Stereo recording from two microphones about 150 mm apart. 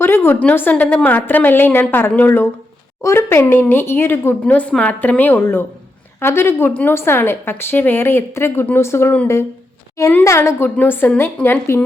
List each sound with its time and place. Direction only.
0.0 s a woman's voice: 15° left (ahead or behind)